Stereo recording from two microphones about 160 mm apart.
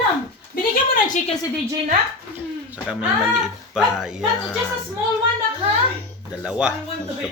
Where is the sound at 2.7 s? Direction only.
5° right (ahead or behind).